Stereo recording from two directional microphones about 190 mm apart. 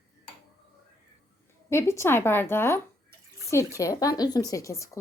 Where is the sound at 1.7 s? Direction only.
15° left (ahead or behind).